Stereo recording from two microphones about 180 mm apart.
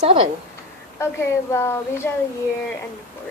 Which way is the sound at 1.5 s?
15° left (ahead or behind).